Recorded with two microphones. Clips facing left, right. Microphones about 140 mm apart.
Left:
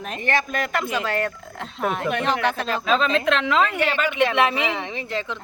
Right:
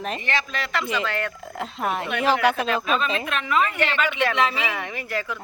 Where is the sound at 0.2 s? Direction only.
50° left (ahead or behind).